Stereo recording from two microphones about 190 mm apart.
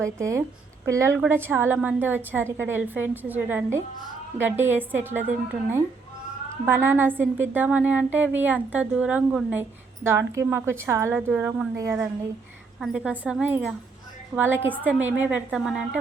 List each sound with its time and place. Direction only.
0.0 s a woman's voice: 15° right (ahead or behind)
6.7 s a woman's voice: 10° right (ahead or behind)